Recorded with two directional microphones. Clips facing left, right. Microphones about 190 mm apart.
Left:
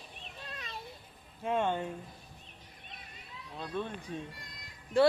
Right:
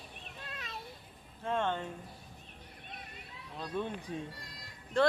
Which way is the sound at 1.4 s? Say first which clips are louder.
Left 2 dB; 15° left (ahead or behind).